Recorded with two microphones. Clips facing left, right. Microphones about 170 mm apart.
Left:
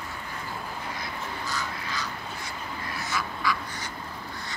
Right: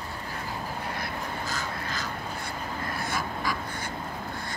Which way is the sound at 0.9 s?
55° right (ahead or behind).